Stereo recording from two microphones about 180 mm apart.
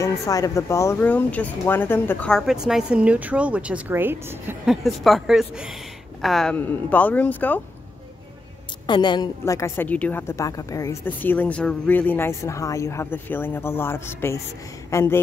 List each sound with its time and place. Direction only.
0.0 s speech: 20° left (ahead or behind); by 4.6 s 10° right (ahead or behind)
4.6 s a woman's voice: centre (ahead or behind)
8.8 s a woman's voice: 25° left (ahead or behind)
9.4 s a woman's voice: 15° left (ahead or behind)